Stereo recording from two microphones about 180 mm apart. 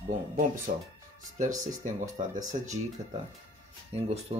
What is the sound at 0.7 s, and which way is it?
Speech, 45° right (ahead or behind).